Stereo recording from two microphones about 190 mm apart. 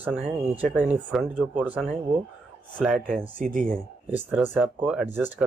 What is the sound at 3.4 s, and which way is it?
Speech, 45° right (ahead or behind).